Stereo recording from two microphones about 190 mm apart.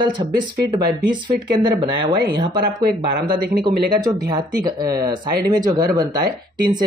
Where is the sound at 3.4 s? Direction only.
55° right (ahead or behind).